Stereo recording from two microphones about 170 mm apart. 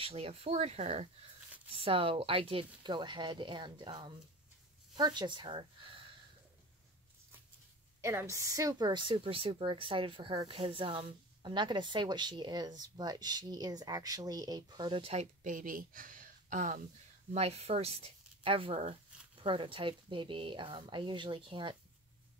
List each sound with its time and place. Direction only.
0.0 s a woman's voice: 35° right (ahead or behind)
8.0 s a woman's voice: 15° right (ahead or behind); by 16.8 s 50° right (ahead or behind)
17.3 s speech: 35° right (ahead or behind)